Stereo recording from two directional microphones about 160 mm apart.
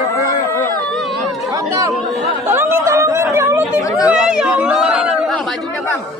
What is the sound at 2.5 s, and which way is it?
Chatter, 15° right (ahead or behind).